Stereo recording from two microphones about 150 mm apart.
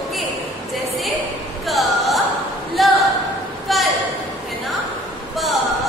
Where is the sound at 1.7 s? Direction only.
Centre (ahead or behind).